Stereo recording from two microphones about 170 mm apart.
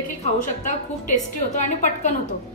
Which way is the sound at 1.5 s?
45° left (ahead or behind).